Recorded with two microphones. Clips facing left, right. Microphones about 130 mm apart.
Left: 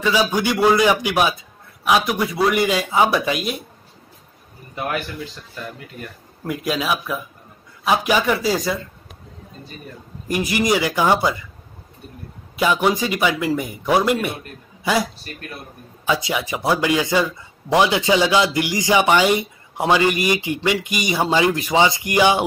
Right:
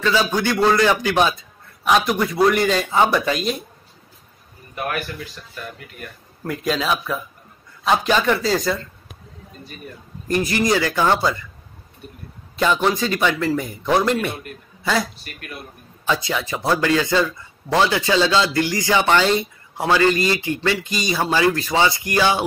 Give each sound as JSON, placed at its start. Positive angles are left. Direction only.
{"t": 0.0, "sound": "a man's voice", "side_deg": 10}
{"t": 4.7, "sound": "speech", "side_deg": 20}
{"t": 6.4, "sound": "a man's voice", "side_deg": 5}
{"t": 10.2, "sound": "a man's voice", "side_deg": 10}
{"t": 12.5, "sound": "a man's voice", "side_deg": 10}
{"t": 15.3, "sound": "speech", "side_deg": 35}
{"t": 16.1, "sound": "a man's voice", "side_deg": 15}